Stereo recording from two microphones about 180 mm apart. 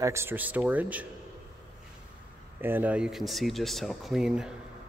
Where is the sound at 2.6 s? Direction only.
10° right (ahead or behind).